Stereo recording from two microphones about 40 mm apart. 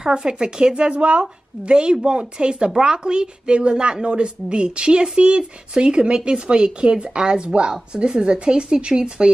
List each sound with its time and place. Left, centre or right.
0.0 s a woman's voice: centre